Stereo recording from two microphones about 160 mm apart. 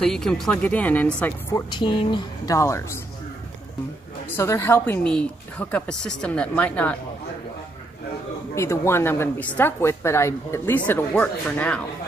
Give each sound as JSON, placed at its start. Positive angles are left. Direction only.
{"t": 0.0, "sound": "speech", "side_deg": 5}
{"t": 1.5, "sound": "speech", "side_deg": 30}
{"t": 2.5, "sound": "a woman's voice", "side_deg": 15}
{"t": 4.4, "sound": "a woman's voice", "side_deg": 15}
{"t": 8.5, "sound": "a woman's voice", "side_deg": 15}